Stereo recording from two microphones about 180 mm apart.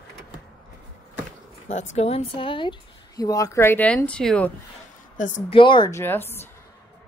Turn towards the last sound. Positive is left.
turn(degrees=10)  # may be behind; listen again after turning